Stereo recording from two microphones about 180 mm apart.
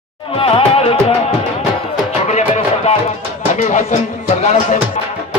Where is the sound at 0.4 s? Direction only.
30° left (ahead or behind).